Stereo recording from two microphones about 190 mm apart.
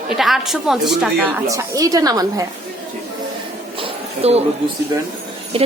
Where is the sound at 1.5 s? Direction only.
15° right (ahead or behind).